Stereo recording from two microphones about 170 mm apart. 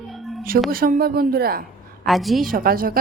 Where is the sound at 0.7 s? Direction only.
60° right (ahead or behind).